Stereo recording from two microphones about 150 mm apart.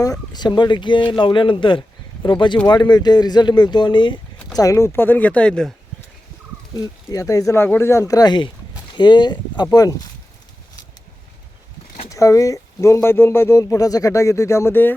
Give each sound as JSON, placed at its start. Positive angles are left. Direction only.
{"t": 0.0, "sound": "speech", "side_deg": 25}
{"t": 4.5, "sound": "speech", "side_deg": 20}
{"t": 6.7, "sound": "speech", "side_deg": 25}
{"t": 12.0, "sound": "speech", "side_deg": 20}